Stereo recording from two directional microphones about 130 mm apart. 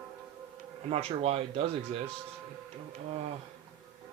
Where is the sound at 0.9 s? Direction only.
50° right (ahead or behind).